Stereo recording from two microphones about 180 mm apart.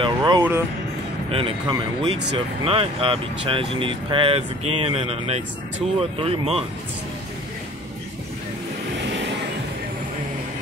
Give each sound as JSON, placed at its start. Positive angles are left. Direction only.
{"t": 0.0, "sound": "speech", "side_deg": -25}
{"t": 9.0, "sound": "vehicle", "side_deg": -75}